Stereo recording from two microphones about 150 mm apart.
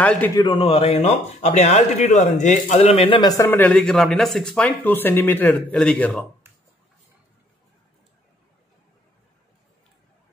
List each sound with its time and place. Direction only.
0.0 s a man's voice: 10° left (ahead or behind)
0.4 s speech: 35° left (ahead or behind); by 2.8 s 55° left (ahead or behind)
2.8 s speech: 40° left (ahead or behind)
3.2 s a man's voice: 20° left (ahead or behind)